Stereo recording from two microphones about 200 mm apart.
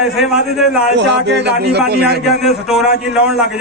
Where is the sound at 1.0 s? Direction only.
60° right (ahead or behind).